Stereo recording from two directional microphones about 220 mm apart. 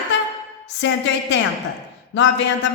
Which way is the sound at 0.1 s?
55° left (ahead or behind).